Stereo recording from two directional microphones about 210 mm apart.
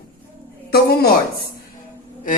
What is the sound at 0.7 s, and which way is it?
Speech, 50° left (ahead or behind).